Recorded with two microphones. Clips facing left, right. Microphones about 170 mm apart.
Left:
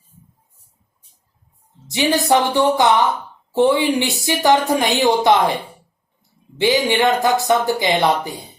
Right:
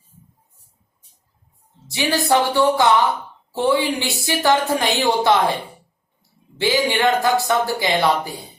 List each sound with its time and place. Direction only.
1.9 s a woman's voice: 20° left (ahead or behind)
6.6 s speech: 20° left (ahead or behind)